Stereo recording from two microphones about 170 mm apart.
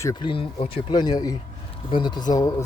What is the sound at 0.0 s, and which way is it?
Speech, 25° left (ahead or behind).